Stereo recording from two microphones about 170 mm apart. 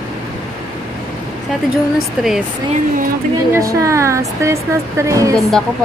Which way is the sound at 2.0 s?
Centre (ahead or behind).